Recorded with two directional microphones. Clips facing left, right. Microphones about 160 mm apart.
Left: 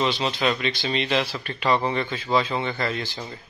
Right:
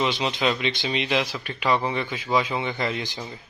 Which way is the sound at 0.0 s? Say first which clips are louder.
Even; 15° right (ahead or behind).